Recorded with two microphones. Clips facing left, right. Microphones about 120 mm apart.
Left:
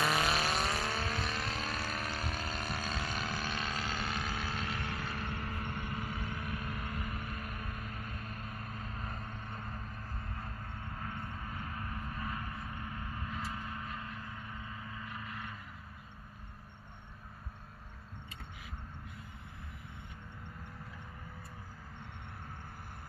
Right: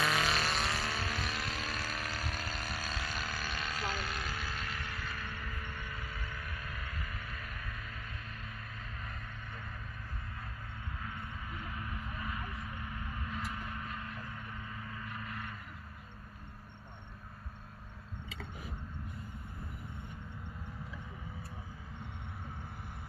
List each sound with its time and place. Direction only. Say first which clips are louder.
0.0 s vehicle: left 1 dB; 5° left (ahead or behind)
3.1 s a sound: left 2 dB; 5° right (ahead or behind)
4.1 s vehicle: left 2 dB; centre (ahead or behind)
4.5 s vehicle: left 3 dB; 25° left (ahead or behind)
5.6 s vehicle: left 5 dB; 55° left (ahead or behind); by 14.1 s 25° left (ahead or behind)
14.9 s gong: right 1 dB; 15° left (ahead or behind)